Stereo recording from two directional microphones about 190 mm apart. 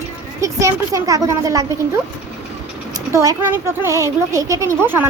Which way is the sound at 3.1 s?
15° right (ahead or behind).